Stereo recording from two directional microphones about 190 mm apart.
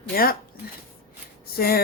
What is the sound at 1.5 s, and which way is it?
Speech, 55° left (ahead or behind).